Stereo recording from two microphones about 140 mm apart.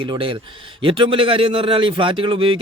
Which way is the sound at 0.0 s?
40° right (ahead or behind).